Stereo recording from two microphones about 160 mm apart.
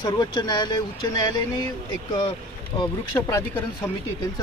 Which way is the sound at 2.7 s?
35° left (ahead or behind).